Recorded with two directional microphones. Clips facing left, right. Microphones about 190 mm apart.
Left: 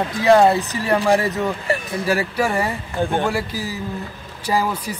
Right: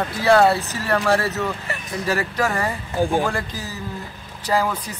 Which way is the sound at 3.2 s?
10° left (ahead or behind).